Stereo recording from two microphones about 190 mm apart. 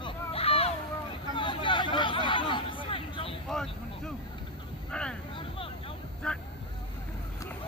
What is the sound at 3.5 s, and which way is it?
Vehicle, centre (ahead or behind).